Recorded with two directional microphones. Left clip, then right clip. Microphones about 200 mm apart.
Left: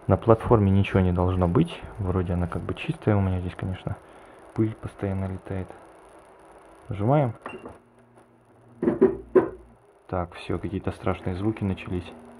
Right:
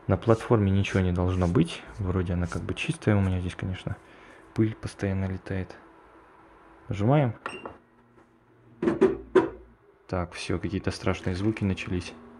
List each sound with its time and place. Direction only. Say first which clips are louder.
0.0 s speech: left 4 dB; 5° left (ahead or behind)
6.9 s speech: left 2 dB; 5° right (ahead or behind)
10.0 s speech: left 1 dB; 10° right (ahead or behind)